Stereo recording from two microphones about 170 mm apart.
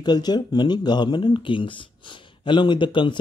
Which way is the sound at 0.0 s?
25° left (ahead or behind).